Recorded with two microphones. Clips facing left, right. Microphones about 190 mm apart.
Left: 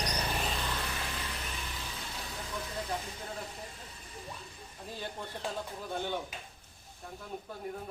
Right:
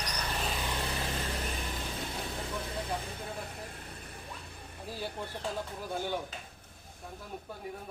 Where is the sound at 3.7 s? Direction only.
60° right (ahead or behind).